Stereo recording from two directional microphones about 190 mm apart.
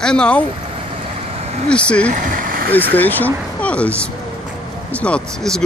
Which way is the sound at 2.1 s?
45° right (ahead or behind).